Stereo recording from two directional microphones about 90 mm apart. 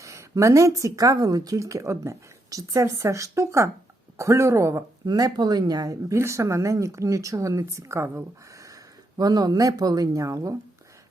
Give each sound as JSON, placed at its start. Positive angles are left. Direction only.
{"t": 0.0, "sound": "speech", "side_deg": -35}
{"t": 5.0, "sound": "speech", "side_deg": -50}
{"t": 6.1, "sound": "speech", "side_deg": -30}